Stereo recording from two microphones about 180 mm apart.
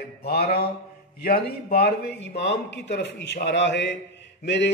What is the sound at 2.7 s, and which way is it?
Mantra, 75° left (ahead or behind).